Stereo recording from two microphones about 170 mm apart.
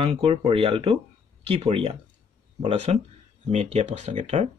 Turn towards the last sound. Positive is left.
turn(degrees=-45)  # may be behind; listen again after turning